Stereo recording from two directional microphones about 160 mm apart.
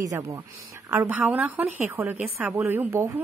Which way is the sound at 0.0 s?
20° right (ahead or behind).